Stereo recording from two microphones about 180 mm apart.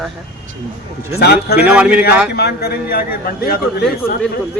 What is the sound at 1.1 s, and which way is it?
Speech, 65° left (ahead or behind).